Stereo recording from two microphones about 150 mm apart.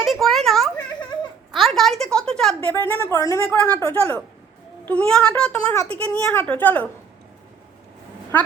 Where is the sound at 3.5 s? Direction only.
10° left (ahead or behind).